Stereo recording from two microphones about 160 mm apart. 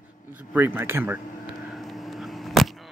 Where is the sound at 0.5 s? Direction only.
15° right (ahead or behind).